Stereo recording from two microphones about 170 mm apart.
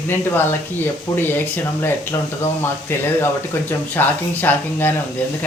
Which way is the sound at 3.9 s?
10° left (ahead or behind).